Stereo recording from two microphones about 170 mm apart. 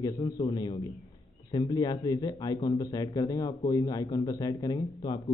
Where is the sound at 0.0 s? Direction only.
25° left (ahead or behind).